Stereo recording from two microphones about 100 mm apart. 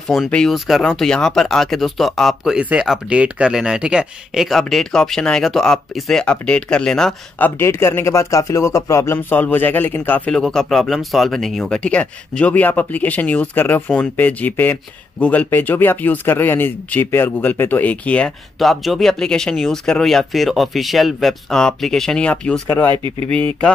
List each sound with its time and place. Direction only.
0.1 s speech: 5° left (ahead or behind)
2.6 s speech: 15° right (ahead or behind); by 7.2 s 5° left (ahead or behind)
7.3 s speech: 20° left (ahead or behind)
10.3 s speech: 5° left (ahead or behind)
18.6 s speech: centre (ahead or behind)